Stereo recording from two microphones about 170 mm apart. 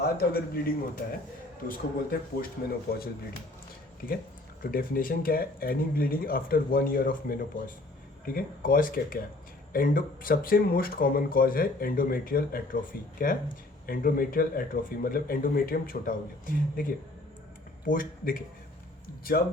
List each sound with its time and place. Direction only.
0.0 s a man's voice: 65° left (ahead or behind)
4.6 s speech: 55° left (ahead or behind)